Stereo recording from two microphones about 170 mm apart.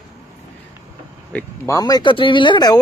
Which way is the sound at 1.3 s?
20° left (ahead or behind).